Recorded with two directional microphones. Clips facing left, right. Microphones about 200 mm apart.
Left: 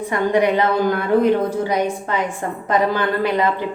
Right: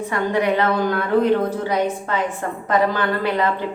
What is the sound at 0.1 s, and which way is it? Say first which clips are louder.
A woman's voice: left 3 dB; 15° left (ahead or behind).